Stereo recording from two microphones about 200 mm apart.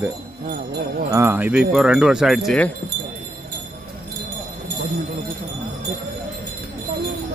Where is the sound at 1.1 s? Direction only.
15° right (ahead or behind); by 2.7 s 5° left (ahead or behind).